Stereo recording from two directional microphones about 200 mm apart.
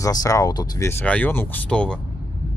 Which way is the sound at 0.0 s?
15° left (ahead or behind).